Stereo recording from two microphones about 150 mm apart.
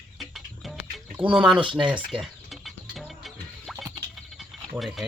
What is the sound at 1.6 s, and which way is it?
Speech, 30° right (ahead or behind).